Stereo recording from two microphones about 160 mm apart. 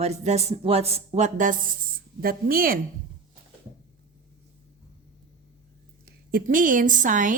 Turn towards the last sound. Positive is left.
turn(degrees=-55)  # may be behind; listen again after turning